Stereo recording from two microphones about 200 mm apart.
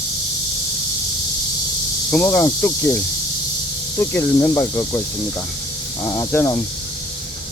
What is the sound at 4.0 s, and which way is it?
Speech, 10° left (ahead or behind).